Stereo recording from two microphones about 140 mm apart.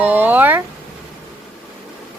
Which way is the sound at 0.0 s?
15° right (ahead or behind).